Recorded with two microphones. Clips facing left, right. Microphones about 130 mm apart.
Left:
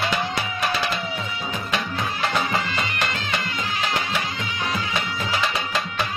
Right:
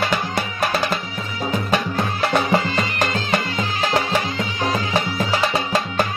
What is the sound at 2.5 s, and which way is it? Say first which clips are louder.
Music: right 6 dB; 35° right (ahead or behind).